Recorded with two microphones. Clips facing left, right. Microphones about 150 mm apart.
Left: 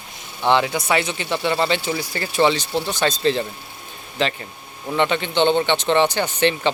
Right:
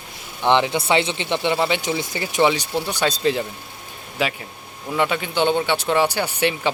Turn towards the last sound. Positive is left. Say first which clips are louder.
# left 2 dB
turn(degrees=-10)  # may be behind; listen again after turning